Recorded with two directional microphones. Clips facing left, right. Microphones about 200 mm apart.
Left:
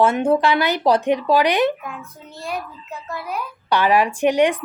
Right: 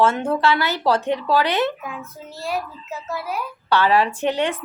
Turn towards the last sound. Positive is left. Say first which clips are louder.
# left 5 dB
turn(degrees=15)  # may be behind; listen again after turning